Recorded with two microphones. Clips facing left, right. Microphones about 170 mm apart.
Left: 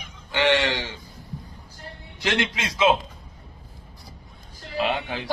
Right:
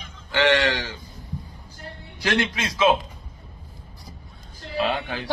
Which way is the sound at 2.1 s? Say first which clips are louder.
Right 2 dB; 25° left (ahead or behind).